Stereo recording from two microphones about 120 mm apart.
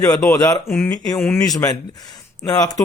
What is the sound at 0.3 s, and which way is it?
Speech, 25° left (ahead or behind).